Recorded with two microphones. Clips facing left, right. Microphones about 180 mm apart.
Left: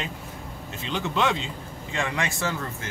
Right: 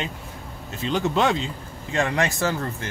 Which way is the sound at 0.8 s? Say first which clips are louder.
Right 4 dB; 40° right (ahead or behind).